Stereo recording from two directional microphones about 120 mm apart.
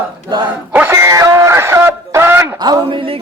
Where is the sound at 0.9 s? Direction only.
30° right (ahead or behind).